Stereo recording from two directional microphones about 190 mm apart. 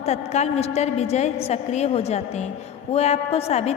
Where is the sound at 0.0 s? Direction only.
35° left (ahead or behind).